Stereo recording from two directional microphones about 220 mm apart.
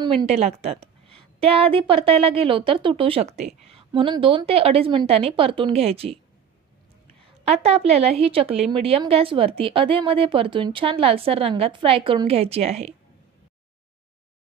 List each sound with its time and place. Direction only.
0.0 s a woman's voice: 20° right (ahead or behind)
7.4 s speech: 30° right (ahead or behind)